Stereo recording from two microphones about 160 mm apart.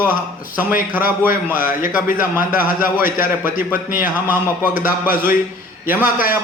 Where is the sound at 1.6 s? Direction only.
60° left (ahead or behind).